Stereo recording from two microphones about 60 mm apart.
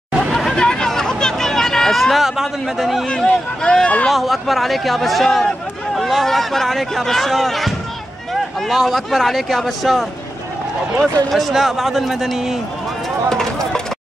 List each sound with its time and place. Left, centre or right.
0.2 s chatter: centre
3.3 s speech: centre
4.1 s speech: centre
11.3 s speech: centre
13.3 s a sound: centre